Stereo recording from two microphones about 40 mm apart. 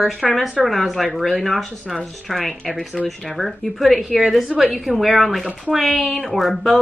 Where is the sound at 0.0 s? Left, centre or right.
Centre.